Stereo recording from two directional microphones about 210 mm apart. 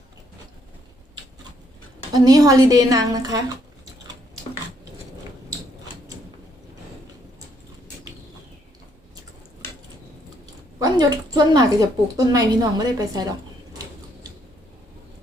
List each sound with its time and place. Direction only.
2.1 s a woman's voice: 20° right (ahead or behind)
10.4 s a woman's voice: 20° right (ahead or behind)